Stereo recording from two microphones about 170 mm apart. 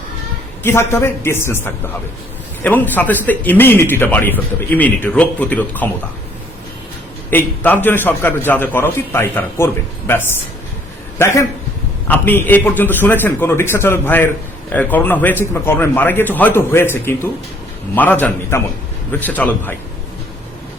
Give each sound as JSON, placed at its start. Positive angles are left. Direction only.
{"t": 0.6, "sound": "a man's voice", "side_deg": 15}
{"t": 7.3, "sound": "a man's voice", "side_deg": 10}